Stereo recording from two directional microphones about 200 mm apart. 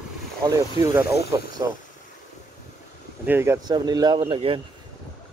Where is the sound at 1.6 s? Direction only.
15° right (ahead or behind).